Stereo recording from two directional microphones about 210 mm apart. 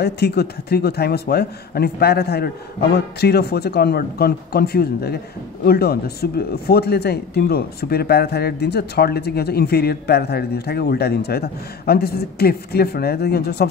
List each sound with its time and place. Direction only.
0.0 s speech: 50° left (ahead or behind)